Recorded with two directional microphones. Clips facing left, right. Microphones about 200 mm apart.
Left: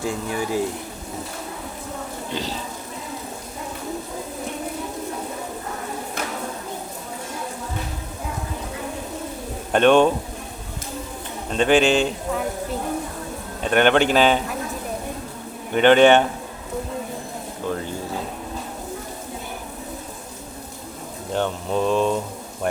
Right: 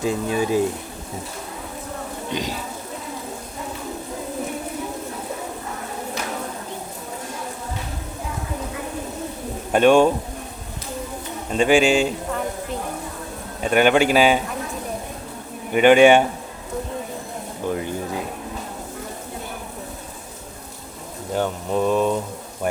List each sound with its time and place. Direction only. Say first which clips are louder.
0.0 s speech: right 4 dB; 20° right (ahead or behind)
2.3 s a man's voice: right 2 dB; 15° right (ahead or behind)
9.7 s a man's voice: right 1 dB; 10° right (ahead or behind)
11.5 s a man's voice: right 1 dB; 10° right (ahead or behind)
13.6 s a man's voice: right 1 dB; 5° right (ahead or behind)
15.7 s a man's voice: right 1 dB; 10° right (ahead or behind)
17.7 s speech: right 2 dB; 15° right (ahead or behind)
21.3 s a man's voice: right 1 dB; 5° right (ahead or behind)